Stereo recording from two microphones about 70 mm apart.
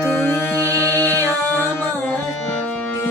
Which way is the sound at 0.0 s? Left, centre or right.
Left.